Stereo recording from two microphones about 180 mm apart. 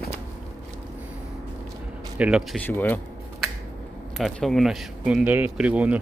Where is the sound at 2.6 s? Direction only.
10° left (ahead or behind).